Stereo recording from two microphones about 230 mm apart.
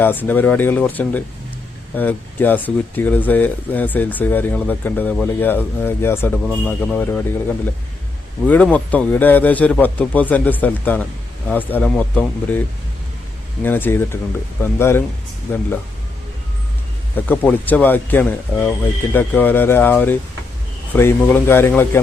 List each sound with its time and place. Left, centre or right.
0.0 s speech: centre
17.2 s speech: centre